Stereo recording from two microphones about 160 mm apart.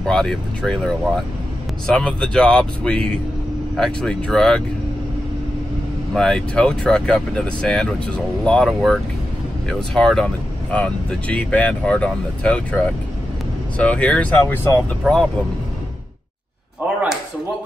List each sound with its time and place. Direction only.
0.0 s speech: 5° left (ahead or behind)
6.1 s speech: 5° left (ahead or behind)
15.0 s speech: centre (ahead or behind)